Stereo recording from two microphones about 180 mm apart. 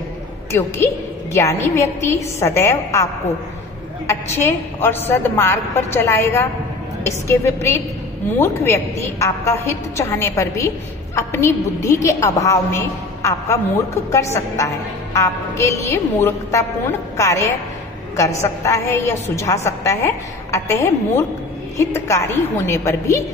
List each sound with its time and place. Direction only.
0.5 s a woman's voice: 15° left (ahead or behind)
4.1 s a woman's voice: 15° left (ahead or behind)